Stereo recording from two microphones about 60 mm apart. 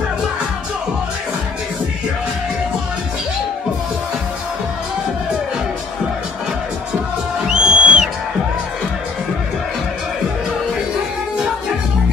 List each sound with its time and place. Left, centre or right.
7.5 s music: centre